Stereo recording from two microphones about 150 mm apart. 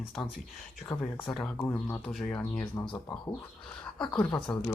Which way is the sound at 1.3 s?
5° left (ahead or behind).